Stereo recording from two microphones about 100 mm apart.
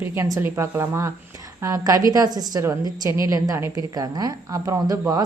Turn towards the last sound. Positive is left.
turn(degrees=-35)  # may be behind; listen again after turning